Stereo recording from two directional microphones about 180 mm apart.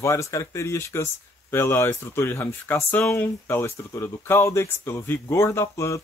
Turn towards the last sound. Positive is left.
turn(degrees=15)  # may be behind; listen again after turning